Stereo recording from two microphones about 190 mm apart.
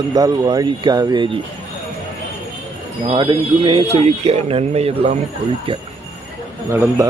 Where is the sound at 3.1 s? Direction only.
25° right (ahead or behind).